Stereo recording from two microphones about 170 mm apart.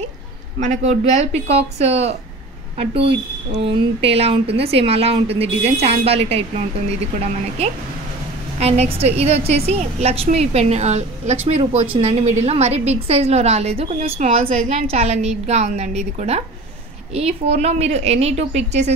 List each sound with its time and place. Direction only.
0.6 s a woman's voice: 45° right (ahead or behind)